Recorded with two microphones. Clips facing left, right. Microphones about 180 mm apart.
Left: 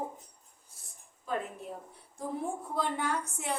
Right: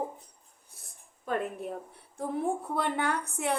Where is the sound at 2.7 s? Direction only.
60° right (ahead or behind).